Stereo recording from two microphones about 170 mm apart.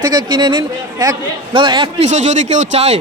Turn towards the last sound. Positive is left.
turn(degrees=-40)  # may be behind; listen again after turning